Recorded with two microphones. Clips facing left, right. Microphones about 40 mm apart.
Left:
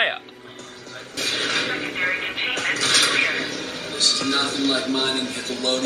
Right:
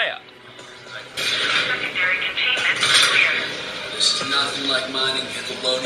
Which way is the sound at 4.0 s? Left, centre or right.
Right.